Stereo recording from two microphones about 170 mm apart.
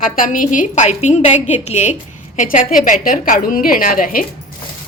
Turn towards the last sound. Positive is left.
turn(degrees=55)  # may be behind; listen again after turning